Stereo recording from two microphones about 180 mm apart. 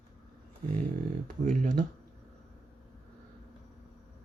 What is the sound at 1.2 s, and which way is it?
Speech, 45° right (ahead or behind).